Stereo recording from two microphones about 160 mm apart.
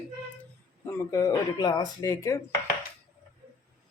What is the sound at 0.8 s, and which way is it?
Speech, 20° left (ahead or behind).